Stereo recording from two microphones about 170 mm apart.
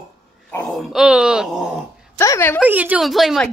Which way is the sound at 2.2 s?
15° left (ahead or behind).